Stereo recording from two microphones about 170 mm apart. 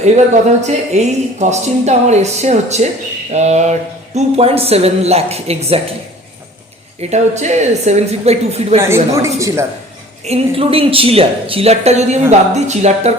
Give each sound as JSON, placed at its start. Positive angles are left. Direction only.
{"t": 0.6, "sound": "speech", "side_deg": -40}
{"t": 7.0, "sound": "speech", "side_deg": -40}
{"t": 8.8, "sound": "speech", "side_deg": -15}
{"t": 10.2, "sound": "speech", "side_deg": -35}